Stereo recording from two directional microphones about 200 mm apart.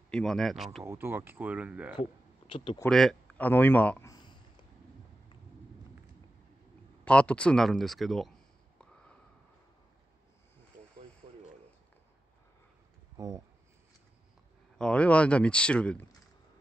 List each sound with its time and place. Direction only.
0.1 s speech: 5° left (ahead or behind)
0.8 s speech: 10° right (ahead or behind)
2.0 s speech: 25° left (ahead or behind)
2.8 s speech: centre (ahead or behind)
4.1 s a sound: 20° left (ahead or behind)
7.1 s speech: 5° left (ahead or behind)
13.2 s speech: 15° right (ahead or behind)
14.8 s speech: 5° left (ahead or behind)